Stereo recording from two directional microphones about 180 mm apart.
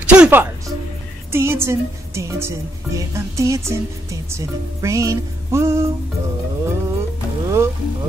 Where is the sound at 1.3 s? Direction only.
15° right (ahead or behind).